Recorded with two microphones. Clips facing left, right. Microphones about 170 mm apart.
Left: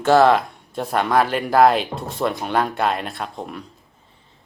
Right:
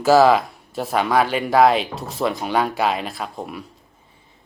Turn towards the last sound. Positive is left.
turn(degrees=-5)  # may be behind; listen again after turning